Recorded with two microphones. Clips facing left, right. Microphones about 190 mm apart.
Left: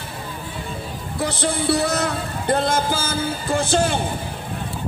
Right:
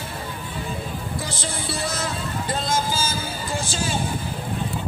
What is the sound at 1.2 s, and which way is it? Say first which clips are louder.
Music: left 8 dB; 60° left (ahead or behind).